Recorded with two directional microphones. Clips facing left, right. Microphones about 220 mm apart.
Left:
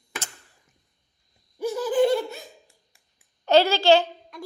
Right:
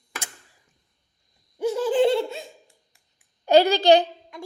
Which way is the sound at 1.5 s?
25° right (ahead or behind).